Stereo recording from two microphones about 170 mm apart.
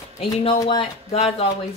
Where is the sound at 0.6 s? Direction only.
35° left (ahead or behind).